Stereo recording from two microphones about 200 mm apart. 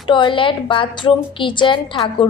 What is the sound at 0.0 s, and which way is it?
A woman's voice, 25° left (ahead or behind).